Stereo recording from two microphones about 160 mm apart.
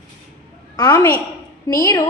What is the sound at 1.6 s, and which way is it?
Speech, 20° left (ahead or behind).